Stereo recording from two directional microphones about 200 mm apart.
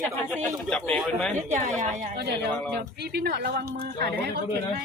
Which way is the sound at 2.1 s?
55° right (ahead or behind).